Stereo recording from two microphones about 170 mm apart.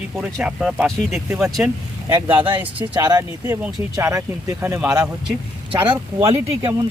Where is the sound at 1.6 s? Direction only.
15° right (ahead or behind).